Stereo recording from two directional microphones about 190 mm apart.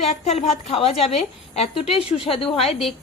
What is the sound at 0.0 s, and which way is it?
Speech, 35° left (ahead or behind).